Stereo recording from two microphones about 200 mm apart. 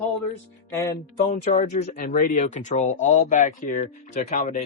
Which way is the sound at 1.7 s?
40° left (ahead or behind).